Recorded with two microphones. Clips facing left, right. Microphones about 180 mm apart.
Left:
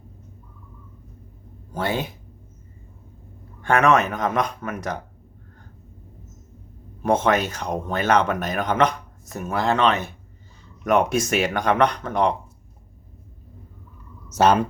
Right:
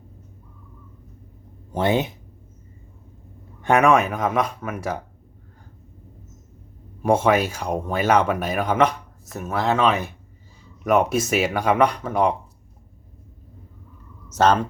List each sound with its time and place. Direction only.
1.7 s speech: 20° right (ahead or behind)
3.6 s speech: 15° right (ahead or behind)
7.0 s speech: 10° right (ahead or behind)
14.3 s speech: 10° left (ahead or behind)